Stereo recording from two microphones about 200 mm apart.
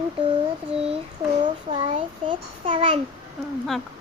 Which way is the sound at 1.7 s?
25° right (ahead or behind).